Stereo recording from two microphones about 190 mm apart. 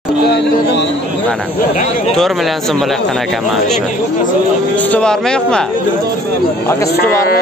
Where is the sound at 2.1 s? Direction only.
Centre (ahead or behind).